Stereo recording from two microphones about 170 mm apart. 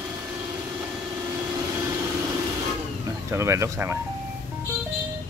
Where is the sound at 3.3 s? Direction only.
15° right (ahead or behind).